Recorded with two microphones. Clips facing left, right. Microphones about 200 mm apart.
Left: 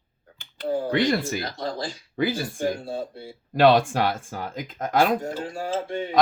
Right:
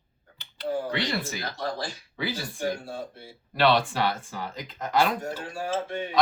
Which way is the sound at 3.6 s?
45° left (ahead or behind).